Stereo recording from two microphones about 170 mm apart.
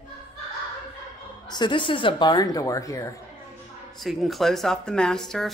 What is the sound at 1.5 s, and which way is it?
Speech, 25° left (ahead or behind).